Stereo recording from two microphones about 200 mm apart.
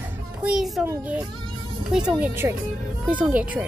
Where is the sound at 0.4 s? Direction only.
5° right (ahead or behind).